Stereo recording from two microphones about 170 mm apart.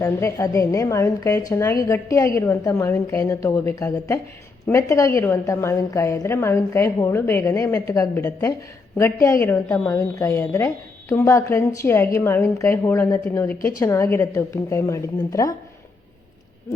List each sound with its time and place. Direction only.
0.0 s a woman's voice: 20° left (ahead or behind)